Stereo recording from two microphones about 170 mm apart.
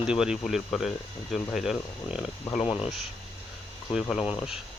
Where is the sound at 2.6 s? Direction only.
30° left (ahead or behind).